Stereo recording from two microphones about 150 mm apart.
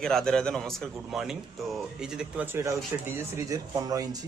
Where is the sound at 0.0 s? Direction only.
5° left (ahead or behind); by 4.2 s 25° right (ahead or behind).